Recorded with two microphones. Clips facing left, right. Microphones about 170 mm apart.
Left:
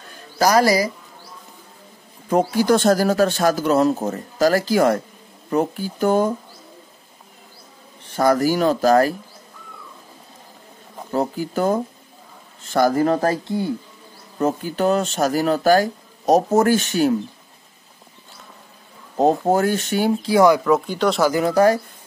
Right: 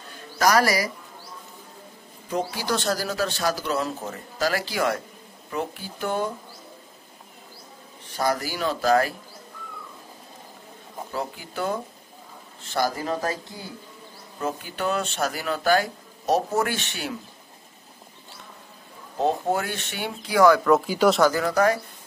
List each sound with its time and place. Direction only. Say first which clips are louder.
0.4 s speech: left 5 dB; 30° left (ahead or behind)
2.2 s speech: left 10 dB; 50° left (ahead or behind)
8.2 s speech: left 9 dB; 45° left (ahead or behind)
11.1 s speech: left 10 dB; 40° left (ahead or behind)
14.4 s speech: left 8 dB; 40° left (ahead or behind)
19.1 s speech: left 7 dB; 40° left (ahead or behind); by 20.6 s 20° left (ahead or behind)
20.6 s speech: left 1 dB; 5° right (ahead or behind)
21.2 s speech: left 4 dB; 20° left (ahead or behind)